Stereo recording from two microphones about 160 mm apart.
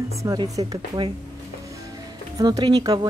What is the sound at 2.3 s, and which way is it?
Speech, 25° right (ahead or behind).